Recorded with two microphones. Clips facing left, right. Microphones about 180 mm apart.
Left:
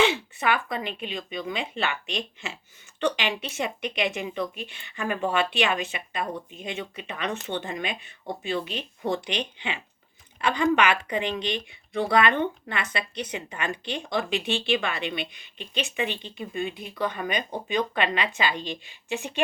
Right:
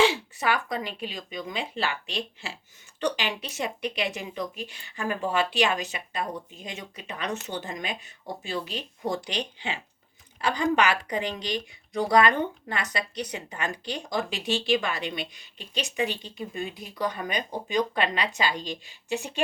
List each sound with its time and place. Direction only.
0.0 s speech: 35° right (ahead or behind)